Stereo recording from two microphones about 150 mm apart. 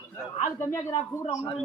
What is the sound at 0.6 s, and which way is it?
Speech, 20° left (ahead or behind).